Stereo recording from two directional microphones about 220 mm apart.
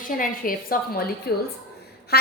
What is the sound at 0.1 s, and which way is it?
A woman's voice, 40° left (ahead or behind).